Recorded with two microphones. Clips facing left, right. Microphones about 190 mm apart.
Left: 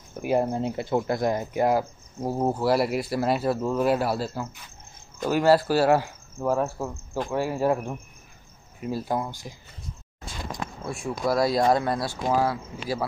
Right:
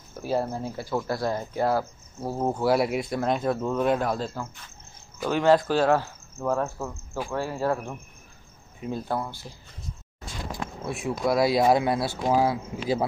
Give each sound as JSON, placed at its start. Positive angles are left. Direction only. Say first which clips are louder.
{"t": 0.1, "sound": "speech", "louder": "left 3 dB", "side_deg": 15}
{"t": 2.4, "sound": "speech", "louder": "even", "side_deg": 0}
{"t": 8.7, "sound": "speech", "louder": "left 2 dB", "side_deg": 5}
{"t": 10.9, "sound": "speech", "louder": "right 1 dB", "side_deg": 0}